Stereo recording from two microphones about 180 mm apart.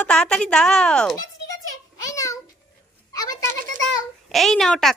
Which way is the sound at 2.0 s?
20° left (ahead or behind).